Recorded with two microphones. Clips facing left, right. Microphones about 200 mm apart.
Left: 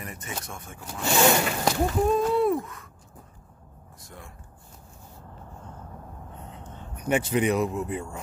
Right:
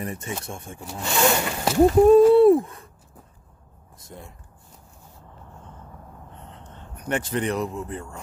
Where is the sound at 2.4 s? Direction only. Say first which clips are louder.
Right 9 dB; 30° right (ahead or behind).